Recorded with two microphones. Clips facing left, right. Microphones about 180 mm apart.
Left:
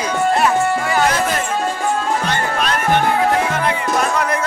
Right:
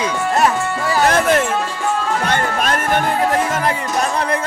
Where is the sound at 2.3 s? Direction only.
50° right (ahead or behind).